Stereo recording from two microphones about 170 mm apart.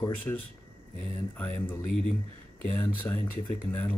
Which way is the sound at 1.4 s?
10° left (ahead or behind).